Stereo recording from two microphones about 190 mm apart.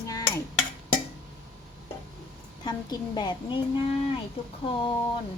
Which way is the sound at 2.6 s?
20° left (ahead or behind).